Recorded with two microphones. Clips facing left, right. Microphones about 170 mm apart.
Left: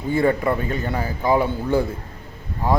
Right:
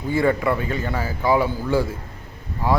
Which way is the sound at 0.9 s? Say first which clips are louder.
Even; 20° left (ahead or behind).